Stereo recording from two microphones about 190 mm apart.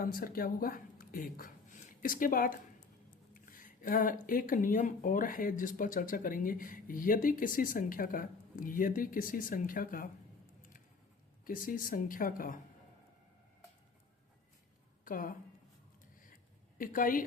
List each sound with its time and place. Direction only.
0.0 s speech: 50° left (ahead or behind)
11.4 s speech: 45° left (ahead or behind)
15.0 s a woman's voice: 45° left (ahead or behind)
16.7 s speech: 45° left (ahead or behind)